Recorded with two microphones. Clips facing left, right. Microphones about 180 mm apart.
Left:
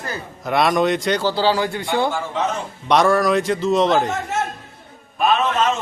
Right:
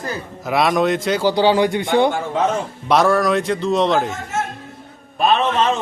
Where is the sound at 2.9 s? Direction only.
Centre (ahead or behind).